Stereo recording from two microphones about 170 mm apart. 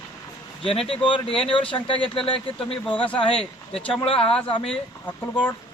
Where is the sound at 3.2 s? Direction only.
30° left (ahead or behind).